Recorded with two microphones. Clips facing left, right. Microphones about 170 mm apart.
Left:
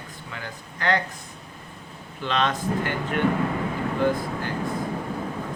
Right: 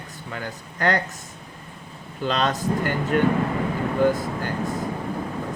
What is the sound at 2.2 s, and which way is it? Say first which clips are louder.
Speech: right 2 dB; 40° right (ahead or behind).